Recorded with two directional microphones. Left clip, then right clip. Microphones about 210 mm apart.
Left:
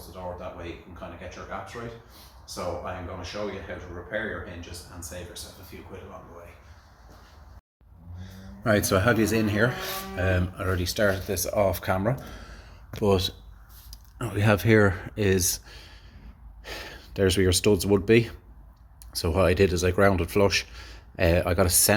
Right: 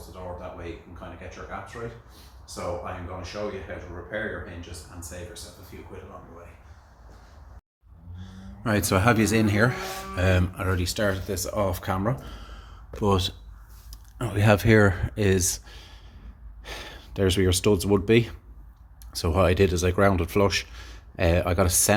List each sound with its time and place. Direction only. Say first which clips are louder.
3.7 s speech: left 1 dB; 5° left (ahead or behind)
5.7 s speech: right 1 dB; centre (ahead or behind)
8.2 s speech: left 2 dB; 5° right (ahead or behind); by 10.6 s 40° right (ahead or behind)
10.6 s speech: left 1 dB; 20° right (ahead or behind)